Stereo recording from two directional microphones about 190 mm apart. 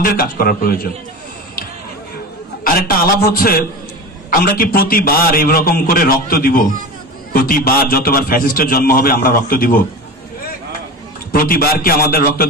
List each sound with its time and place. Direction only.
0.0 s a man's voice: 50° left (ahead or behind)
2.6 s a man's voice: 50° left (ahead or behind)
11.3 s a man's voice: 50° left (ahead or behind)